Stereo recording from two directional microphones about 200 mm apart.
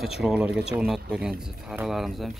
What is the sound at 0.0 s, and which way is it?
Speech, centre (ahead or behind).